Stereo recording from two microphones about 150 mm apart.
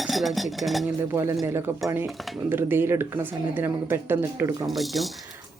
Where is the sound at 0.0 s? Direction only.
Centre (ahead or behind).